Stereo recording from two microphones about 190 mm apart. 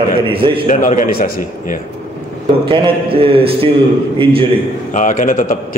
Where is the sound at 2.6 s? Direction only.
25° right (ahead or behind).